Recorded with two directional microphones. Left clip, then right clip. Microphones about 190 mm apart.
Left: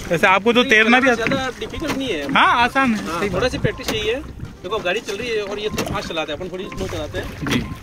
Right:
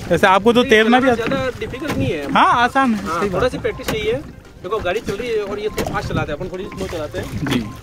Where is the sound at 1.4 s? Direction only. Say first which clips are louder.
Right 2 dB; 5° right (ahead or behind).